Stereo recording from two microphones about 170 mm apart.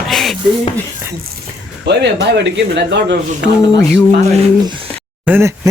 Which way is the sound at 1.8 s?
90° right.